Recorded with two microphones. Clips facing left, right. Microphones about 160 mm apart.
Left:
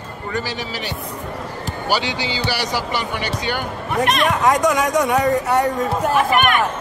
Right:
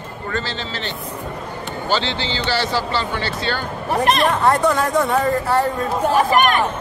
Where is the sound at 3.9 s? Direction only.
35° right (ahead or behind).